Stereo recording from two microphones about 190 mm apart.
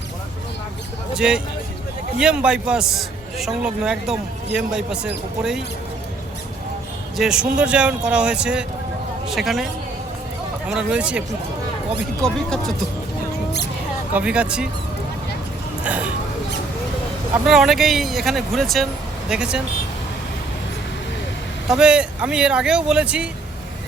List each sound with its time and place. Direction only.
1.1 s a man's voice: 5° right (ahead or behind)
7.2 s a man's voice: 5° right (ahead or behind)
10.7 s a man's voice: 5° right (ahead or behind)
12.2 s a man's voice: centre (ahead or behind)
14.1 s a man's voice: 5° right (ahead or behind)
15.8 s a sound: 5° right (ahead or behind)
17.4 s a man's voice: centre (ahead or behind)
21.7 s a man's voice: 5° right (ahead or behind)